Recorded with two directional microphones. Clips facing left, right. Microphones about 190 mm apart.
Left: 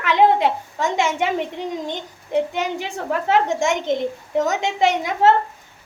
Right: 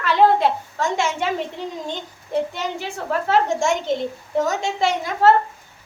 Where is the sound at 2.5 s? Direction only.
15° left (ahead or behind).